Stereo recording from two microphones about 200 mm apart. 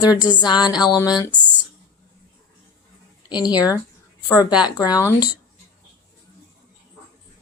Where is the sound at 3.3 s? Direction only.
20° left (ahead or behind).